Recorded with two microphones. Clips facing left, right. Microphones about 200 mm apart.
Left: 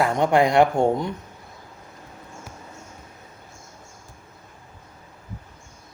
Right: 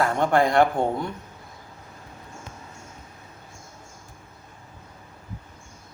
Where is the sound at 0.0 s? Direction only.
15° left (ahead or behind).